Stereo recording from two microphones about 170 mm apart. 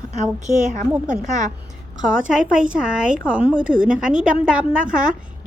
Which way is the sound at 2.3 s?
5° right (ahead or behind).